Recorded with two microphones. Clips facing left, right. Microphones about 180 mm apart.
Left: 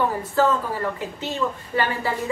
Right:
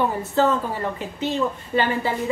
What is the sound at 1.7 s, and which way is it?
Speech, 20° right (ahead or behind).